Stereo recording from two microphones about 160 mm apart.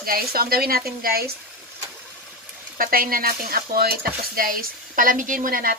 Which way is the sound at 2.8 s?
65° right (ahead or behind).